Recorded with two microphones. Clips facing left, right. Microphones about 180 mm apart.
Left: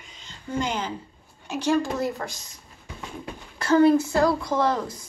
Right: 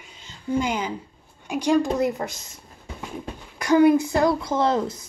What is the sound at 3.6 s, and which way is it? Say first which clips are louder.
A woman's voice: right 1 dB; 15° right (ahead or behind).